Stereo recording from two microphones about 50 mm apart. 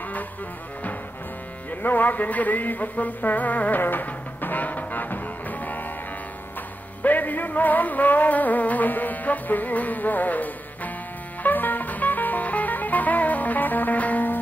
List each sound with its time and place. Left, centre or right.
1.7 s music: left
7.0 s music: left